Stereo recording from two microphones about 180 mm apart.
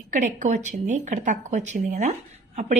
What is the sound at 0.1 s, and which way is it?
A woman's voice, 45° right (ahead or behind).